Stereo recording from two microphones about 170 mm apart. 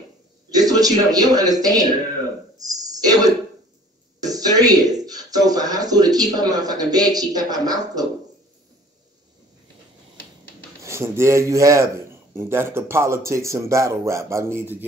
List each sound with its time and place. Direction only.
0.5 s a man's voice: 20° right (ahead or behind)
2.5 s throat clearing: 20° right (ahead or behind)
4.2 s speech: 20° right (ahead or behind)
10.8 s speech: 15° right (ahead or behind)